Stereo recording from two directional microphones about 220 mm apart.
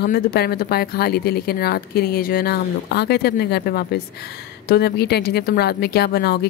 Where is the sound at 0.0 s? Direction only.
45° left (ahead or behind).